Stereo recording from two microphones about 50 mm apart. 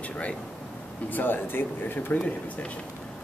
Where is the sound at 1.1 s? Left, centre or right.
Left.